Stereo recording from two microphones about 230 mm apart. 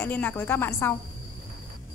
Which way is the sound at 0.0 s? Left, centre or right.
Centre.